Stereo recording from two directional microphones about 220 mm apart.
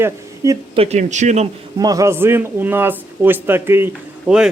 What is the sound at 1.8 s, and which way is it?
Speech, 15° right (ahead or behind).